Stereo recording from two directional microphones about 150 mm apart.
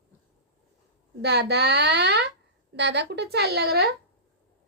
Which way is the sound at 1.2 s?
90° right.